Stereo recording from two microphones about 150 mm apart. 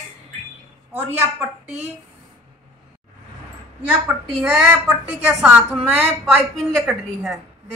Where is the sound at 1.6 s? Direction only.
50° right (ahead or behind).